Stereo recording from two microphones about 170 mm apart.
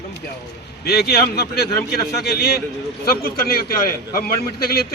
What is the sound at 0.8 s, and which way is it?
A man's voice, 70° left (ahead or behind).